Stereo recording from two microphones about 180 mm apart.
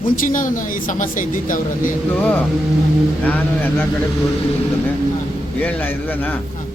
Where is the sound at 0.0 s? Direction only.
50° left (ahead or behind).